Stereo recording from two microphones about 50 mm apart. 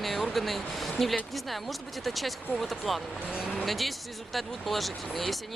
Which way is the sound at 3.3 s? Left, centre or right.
Centre.